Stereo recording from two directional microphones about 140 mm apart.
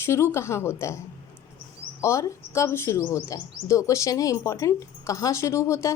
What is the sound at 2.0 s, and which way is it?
Speech, 20° left (ahead or behind).